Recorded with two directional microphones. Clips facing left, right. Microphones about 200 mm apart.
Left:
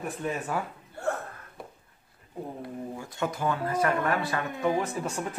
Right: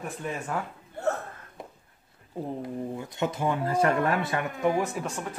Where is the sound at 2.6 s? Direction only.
20° right (ahead or behind).